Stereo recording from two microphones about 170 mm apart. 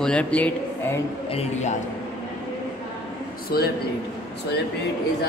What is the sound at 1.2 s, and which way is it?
Speech, 35° left (ahead or behind).